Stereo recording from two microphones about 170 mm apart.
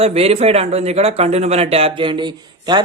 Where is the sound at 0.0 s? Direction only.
35° right (ahead or behind).